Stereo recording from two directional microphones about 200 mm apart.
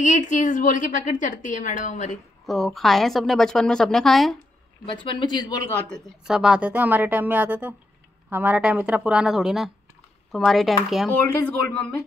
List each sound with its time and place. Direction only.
0.0 s a woman's voice: 40° left (ahead or behind)
2.4 s a woman's voice: centre (ahead or behind)
5.0 s speech: 20° left (ahead or behind)
6.2 s a woman's voice: 5° right (ahead or behind)
11.1 s speech: 10° left (ahead or behind)